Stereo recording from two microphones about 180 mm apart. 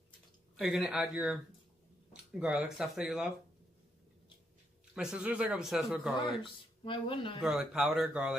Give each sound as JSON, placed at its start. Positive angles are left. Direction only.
{"t": 0.6, "sound": "speech", "side_deg": 0}
{"t": 4.9, "sound": "speech", "side_deg": -5}
{"t": 6.4, "sound": "speech", "side_deg": 30}
{"t": 7.4, "sound": "speech", "side_deg": -5}